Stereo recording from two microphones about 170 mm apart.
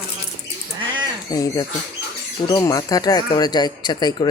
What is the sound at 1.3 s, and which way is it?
Speech, 20° left (ahead or behind).